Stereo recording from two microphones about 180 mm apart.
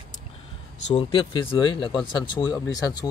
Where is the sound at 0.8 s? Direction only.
30° left (ahead or behind).